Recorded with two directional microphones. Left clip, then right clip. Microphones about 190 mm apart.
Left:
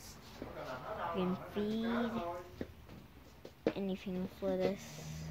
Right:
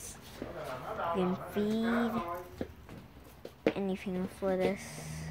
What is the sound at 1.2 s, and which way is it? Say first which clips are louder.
Speech: right 5 dB; 5° right (ahead or behind).